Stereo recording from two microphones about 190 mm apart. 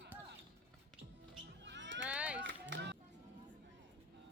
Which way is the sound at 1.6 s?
70° right (ahead or behind).